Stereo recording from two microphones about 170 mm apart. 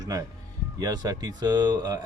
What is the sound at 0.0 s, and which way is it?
A man's voice, 20° right (ahead or behind).